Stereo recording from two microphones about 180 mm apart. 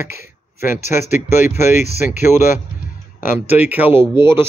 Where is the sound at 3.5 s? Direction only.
10° right (ahead or behind).